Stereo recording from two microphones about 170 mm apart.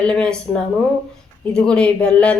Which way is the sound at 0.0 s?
5° left (ahead or behind).